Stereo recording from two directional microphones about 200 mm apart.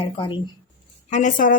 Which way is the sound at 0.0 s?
25° left (ahead or behind).